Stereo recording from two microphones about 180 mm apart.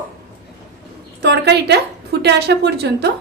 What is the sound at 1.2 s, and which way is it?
A woman's voice, 70° right (ahead or behind).